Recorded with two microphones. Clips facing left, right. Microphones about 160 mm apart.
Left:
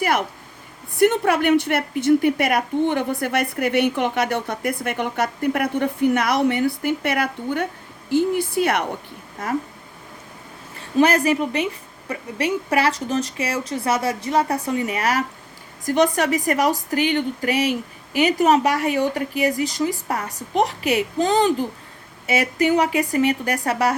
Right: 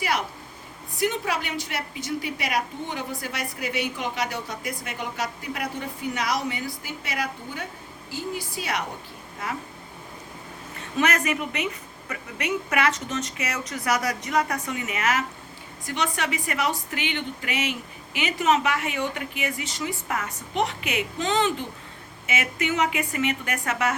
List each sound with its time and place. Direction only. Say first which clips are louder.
0.0 s a sound: left 6 dB; 55° left (ahead or behind)
0.9 s a woman's voice: left 9 dB; 60° left (ahead or behind)
10.8 s speech: left 7 dB; 30° left (ahead or behind)